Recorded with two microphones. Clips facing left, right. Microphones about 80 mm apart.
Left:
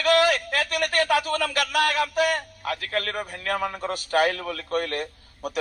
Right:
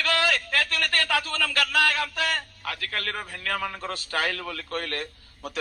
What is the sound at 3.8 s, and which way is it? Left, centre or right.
A man's voice, centre.